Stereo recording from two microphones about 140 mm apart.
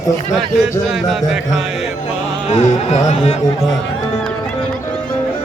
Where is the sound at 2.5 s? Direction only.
50° left (ahead or behind).